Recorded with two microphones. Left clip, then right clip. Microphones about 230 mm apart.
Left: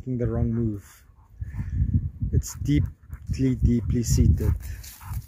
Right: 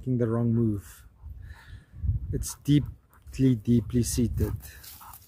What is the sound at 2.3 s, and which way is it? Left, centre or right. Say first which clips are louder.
Speech: right 1 dB; centre.